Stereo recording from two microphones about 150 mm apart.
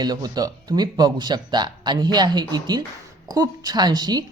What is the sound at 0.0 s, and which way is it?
A woman's voice, 25° right (ahead or behind).